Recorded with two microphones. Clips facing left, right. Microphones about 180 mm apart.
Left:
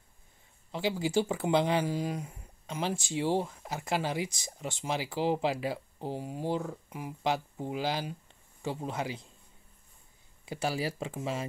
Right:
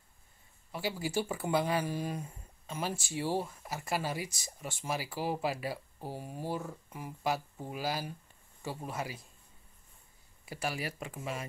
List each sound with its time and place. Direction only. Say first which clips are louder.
0.7 s speech: left 5 dB; 20° left (ahead or behind)
10.4 s speech: left 5 dB; 25° left (ahead or behind)